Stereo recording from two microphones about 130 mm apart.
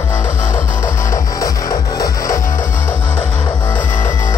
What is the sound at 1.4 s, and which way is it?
Music, 25° left (ahead or behind).